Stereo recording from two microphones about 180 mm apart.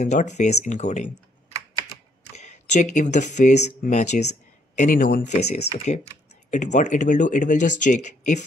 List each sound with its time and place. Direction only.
0.0 s speech: 40° left (ahead or behind)
2.3 s speech: 40° left (ahead or behind)